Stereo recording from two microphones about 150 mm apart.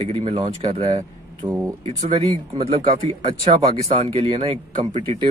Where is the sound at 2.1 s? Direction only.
40° right (ahead or behind).